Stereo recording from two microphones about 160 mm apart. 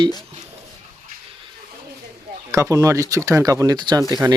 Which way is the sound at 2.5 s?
20° right (ahead or behind).